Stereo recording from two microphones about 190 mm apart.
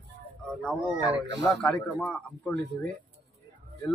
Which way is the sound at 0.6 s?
5° left (ahead or behind).